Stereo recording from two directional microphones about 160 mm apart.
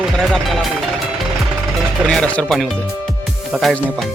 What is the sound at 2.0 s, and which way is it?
Speech, 10° left (ahead or behind).